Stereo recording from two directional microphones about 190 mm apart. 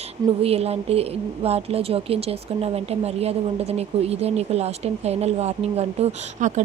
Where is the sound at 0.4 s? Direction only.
30° right (ahead or behind).